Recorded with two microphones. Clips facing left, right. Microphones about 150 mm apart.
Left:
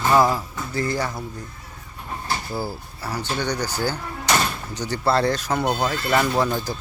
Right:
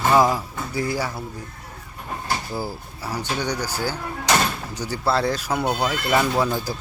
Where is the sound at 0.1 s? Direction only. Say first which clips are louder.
Left 1 dB; 15° right (ahead or behind).